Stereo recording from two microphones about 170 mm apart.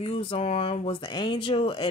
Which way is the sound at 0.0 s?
35° left (ahead or behind).